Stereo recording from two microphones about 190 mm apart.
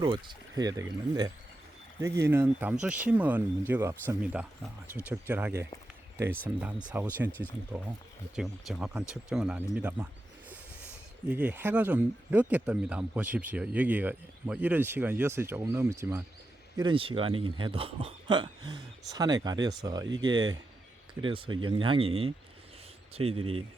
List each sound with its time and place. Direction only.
0.0 s speech: 25° right (ahead or behind); by 10.1 s 5° right (ahead or behind)
11.3 s speech: 10° right (ahead or behind)
16.7 s speech: 25° right (ahead or behind)